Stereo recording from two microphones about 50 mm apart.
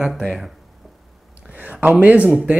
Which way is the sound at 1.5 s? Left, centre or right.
Right.